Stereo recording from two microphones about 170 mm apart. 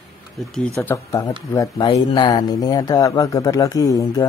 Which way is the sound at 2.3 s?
20° left (ahead or behind).